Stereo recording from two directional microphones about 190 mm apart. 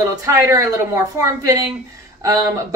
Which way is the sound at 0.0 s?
20° right (ahead or behind).